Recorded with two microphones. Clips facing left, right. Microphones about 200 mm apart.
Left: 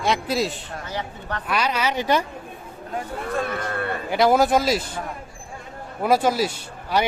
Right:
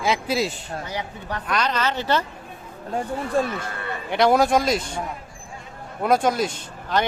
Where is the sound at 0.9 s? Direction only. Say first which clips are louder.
Left 3 dB; 15° right (ahead or behind).